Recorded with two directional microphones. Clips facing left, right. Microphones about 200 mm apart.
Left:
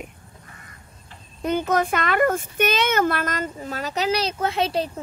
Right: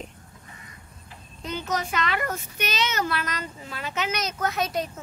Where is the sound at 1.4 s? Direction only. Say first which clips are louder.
Left 8 dB; 55° left (ahead or behind); by 4.8 s 30° left (ahead or behind).